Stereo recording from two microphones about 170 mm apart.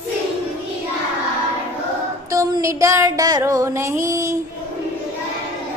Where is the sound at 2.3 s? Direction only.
20° right (ahead or behind).